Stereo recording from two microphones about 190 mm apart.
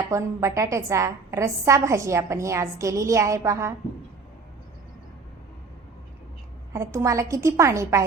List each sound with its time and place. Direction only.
0.1 s a woman's voice: 15° right (ahead or behind)
6.7 s a woman's voice: 15° right (ahead or behind)